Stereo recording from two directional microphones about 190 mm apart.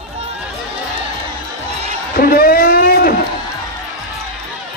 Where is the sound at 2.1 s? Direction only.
50° left (ahead or behind).